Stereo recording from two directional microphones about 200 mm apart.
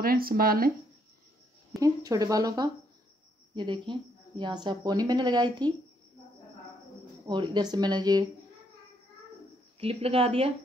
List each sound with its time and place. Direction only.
0.0 s speech: 45° right (ahead or behind)
1.8 s a woman's voice: 15° right (ahead or behind)
7.2 s a woman's voice: 20° right (ahead or behind)
9.8 s a woman's voice: 30° right (ahead or behind)